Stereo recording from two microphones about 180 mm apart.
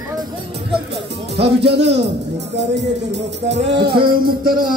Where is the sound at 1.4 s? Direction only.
70° right (ahead or behind).